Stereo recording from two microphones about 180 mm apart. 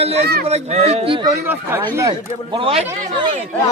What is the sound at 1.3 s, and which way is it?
Speech, 10° right (ahead or behind).